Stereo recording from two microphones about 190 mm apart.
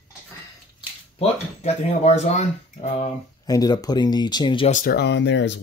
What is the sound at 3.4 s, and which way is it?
Speech, 20° left (ahead or behind).